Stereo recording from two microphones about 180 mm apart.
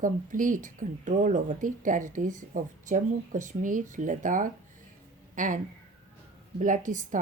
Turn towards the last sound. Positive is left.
turn(degrees=-45)  # may be behind; listen again after turning